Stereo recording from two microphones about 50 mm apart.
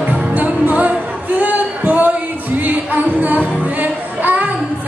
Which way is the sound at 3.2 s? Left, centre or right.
Right.